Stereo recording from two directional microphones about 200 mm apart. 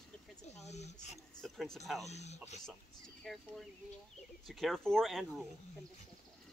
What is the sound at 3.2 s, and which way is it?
Speech, centre (ahead or behind).